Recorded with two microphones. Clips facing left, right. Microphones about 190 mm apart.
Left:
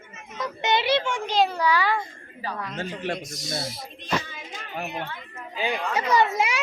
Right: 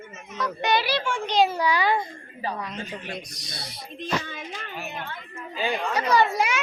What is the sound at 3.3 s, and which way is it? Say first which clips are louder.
Speech: left 9 dB; 25° left (ahead or behind).